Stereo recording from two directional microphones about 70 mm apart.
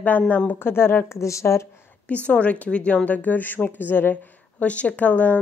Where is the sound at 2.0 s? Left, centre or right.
Centre.